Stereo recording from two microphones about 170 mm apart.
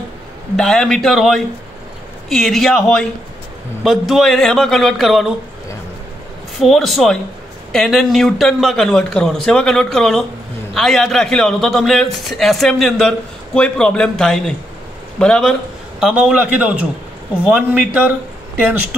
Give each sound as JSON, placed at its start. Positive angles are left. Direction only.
{"t": 0.6, "sound": "speech", "side_deg": 5}
{"t": 6.6, "sound": "a man's voice", "side_deg": 0}